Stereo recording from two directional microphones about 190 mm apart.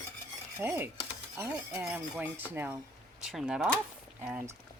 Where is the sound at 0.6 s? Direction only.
10° right (ahead or behind).